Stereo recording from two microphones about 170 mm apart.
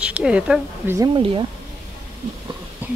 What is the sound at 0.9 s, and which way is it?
Speech, 20° right (ahead or behind).